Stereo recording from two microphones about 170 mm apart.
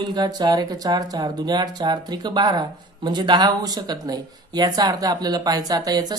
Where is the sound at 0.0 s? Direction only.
25° right (ahead or behind).